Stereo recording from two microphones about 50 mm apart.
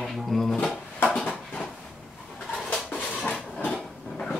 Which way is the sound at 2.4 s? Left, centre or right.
Centre.